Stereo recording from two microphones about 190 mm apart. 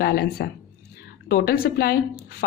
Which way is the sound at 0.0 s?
55° left (ahead or behind).